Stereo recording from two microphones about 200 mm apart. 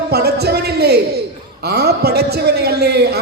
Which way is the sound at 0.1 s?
55° right (ahead or behind).